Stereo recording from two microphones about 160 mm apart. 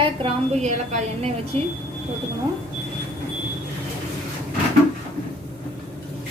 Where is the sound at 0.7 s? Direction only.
45° right (ahead or behind).